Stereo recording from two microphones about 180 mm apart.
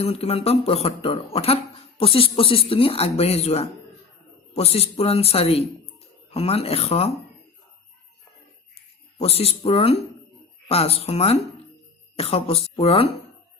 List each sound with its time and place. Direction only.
0.0 s speech: 35° left (ahead or behind)
9.1 s speech: 35° left (ahead or behind)